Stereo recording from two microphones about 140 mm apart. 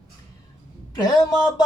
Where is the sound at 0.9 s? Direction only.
25° left (ahead or behind).